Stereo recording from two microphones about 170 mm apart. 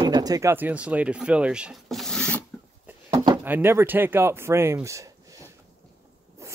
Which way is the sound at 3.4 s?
15° right (ahead or behind).